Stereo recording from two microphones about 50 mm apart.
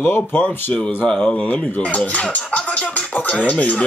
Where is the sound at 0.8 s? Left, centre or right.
Centre.